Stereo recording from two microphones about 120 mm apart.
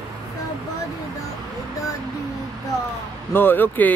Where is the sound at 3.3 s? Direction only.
15° left (ahead or behind).